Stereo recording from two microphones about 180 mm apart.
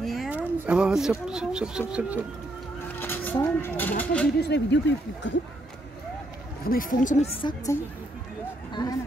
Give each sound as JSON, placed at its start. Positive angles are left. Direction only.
{"t": 0.0, "sound": "a sound", "side_deg": 0}
{"t": 1.2, "sound": "speech", "side_deg": -5}
{"t": 3.0, "sound": "a sound", "side_deg": 10}
{"t": 4.0, "sound": "a woman's voice", "side_deg": 5}
{"t": 4.4, "sound": "speech", "side_deg": 70}
{"t": 6.6, "sound": "speech", "side_deg": 50}
{"t": 7.4, "sound": "a woman's voice", "side_deg": 15}